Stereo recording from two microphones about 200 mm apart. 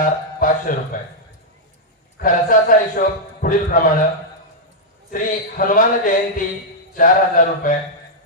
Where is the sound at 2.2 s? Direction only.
45° left (ahead or behind).